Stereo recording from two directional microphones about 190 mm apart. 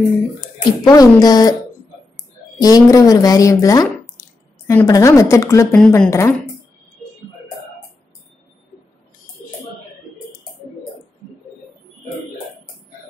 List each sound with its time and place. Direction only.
0.8 s speech: 20° left (ahead or behind)
2.6 s a woman's voice: 20° left (ahead or behind)